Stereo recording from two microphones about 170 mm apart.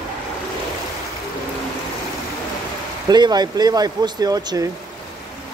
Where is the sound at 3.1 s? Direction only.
25° right (ahead or behind).